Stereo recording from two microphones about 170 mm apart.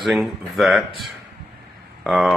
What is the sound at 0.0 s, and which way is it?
Speech, centre (ahead or behind).